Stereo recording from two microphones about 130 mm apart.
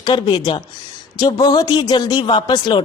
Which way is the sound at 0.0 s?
35° left (ahead or behind).